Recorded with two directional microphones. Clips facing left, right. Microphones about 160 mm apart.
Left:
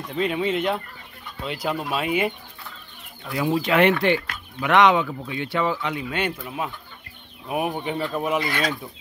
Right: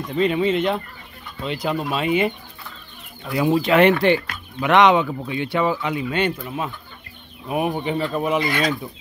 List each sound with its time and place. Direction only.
0.1 s speech: 5° left (ahead or behind)
3.3 s speech: 20° right (ahead or behind)
3.5 s speech: 35° right (ahead or behind); by 8.4 s centre (ahead or behind)
8.4 s speech: 15° right (ahead or behind)